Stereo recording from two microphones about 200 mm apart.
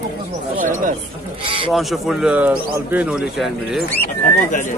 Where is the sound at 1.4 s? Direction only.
25° right (ahead or behind).